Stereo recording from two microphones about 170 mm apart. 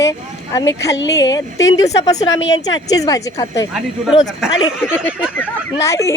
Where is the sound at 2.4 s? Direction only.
90° left.